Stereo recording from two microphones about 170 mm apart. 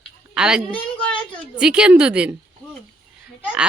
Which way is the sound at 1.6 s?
5° right (ahead or behind).